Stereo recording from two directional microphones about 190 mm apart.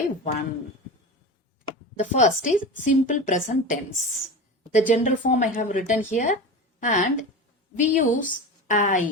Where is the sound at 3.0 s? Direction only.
40° left (ahead or behind).